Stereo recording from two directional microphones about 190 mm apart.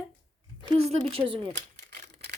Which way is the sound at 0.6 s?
30° right (ahead or behind).